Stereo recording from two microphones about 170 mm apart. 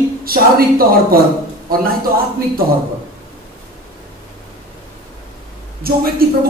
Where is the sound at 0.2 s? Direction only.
60° right (ahead or behind).